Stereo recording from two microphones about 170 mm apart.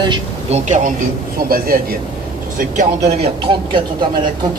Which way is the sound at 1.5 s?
60° right (ahead or behind).